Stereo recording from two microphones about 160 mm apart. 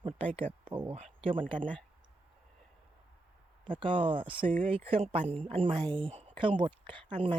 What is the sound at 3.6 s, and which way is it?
Speech, 30° right (ahead or behind).